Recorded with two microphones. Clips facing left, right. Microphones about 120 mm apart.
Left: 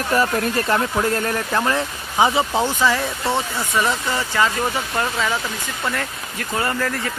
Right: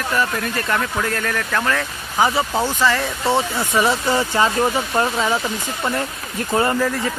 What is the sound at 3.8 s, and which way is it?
Speech, 15° right (ahead or behind).